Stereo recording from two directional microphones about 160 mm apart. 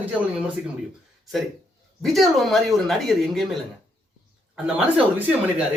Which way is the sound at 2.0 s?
Centre (ahead or behind).